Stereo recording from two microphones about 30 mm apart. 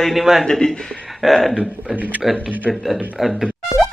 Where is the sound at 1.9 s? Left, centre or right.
Right.